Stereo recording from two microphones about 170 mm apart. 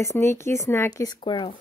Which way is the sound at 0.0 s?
15° left (ahead or behind).